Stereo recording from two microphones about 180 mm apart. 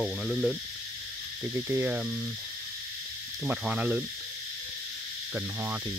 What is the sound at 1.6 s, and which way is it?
Cricket, 10° right (ahead or behind).